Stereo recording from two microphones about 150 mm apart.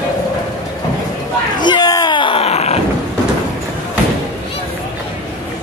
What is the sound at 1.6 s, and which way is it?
Groan, 30° left (ahead or behind).